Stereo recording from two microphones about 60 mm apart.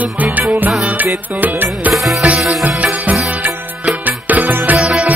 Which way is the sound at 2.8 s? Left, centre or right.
Right.